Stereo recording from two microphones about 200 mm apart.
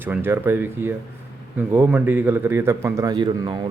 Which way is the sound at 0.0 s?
10° right (ahead or behind).